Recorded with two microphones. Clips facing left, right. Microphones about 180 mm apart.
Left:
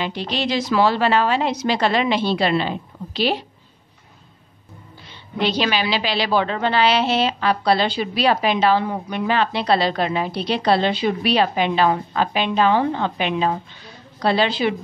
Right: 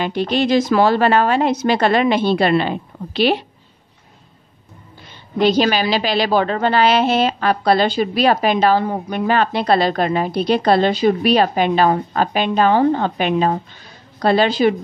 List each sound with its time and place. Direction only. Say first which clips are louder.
0.0 s a woman's voice: right 6 dB; 50° right (ahead or behind)
5.4 s a woman's voice: right 6 dB; 45° right (ahead or behind)